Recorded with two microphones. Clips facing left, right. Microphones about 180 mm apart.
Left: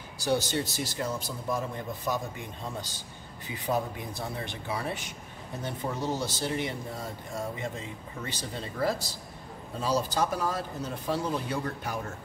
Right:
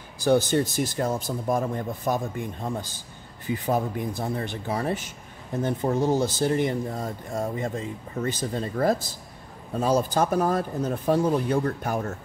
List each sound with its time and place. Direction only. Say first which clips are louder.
0.2 s speech: right 7 dB; 50° right (ahead or behind)